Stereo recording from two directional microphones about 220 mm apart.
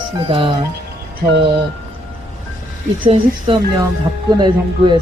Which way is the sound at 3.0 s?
25° right (ahead or behind).